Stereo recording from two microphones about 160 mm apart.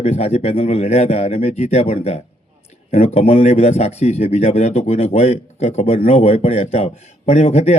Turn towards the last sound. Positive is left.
turn(degrees=40)  # may be behind; listen again after turning